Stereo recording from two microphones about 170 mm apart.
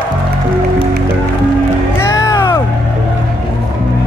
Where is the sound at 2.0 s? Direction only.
15° left (ahead or behind).